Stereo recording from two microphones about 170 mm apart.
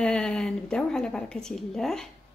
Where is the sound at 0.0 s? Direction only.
5° left (ahead or behind).